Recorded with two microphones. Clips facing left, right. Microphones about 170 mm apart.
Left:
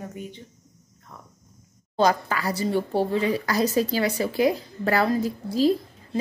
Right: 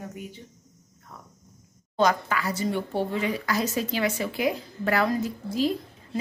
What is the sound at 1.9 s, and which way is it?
Speech, 35° left (ahead or behind).